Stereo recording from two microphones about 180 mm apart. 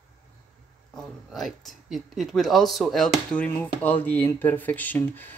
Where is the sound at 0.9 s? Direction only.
Centre (ahead or behind).